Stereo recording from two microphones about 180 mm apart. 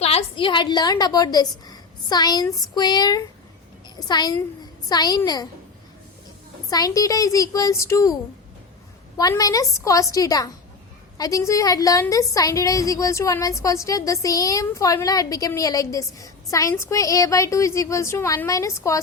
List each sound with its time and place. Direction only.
0.0 s a woman's voice: 35° left (ahead or behind)
6.7 s a woman's voice: 20° left (ahead or behind)
9.1 s a woman's voice: 20° left (ahead or behind)